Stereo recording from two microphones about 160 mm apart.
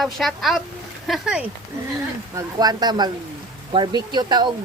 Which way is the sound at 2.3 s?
25° right (ahead or behind).